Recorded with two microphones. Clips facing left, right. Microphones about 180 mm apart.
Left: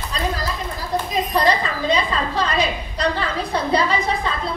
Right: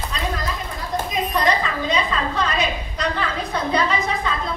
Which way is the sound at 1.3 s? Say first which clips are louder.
Left 2 dB; 30° left (ahead or behind).